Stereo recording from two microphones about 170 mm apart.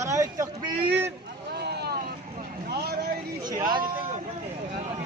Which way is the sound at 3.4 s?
25° right (ahead or behind).